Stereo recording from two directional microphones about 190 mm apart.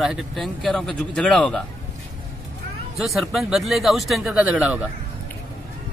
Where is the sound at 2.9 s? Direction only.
Centre (ahead or behind).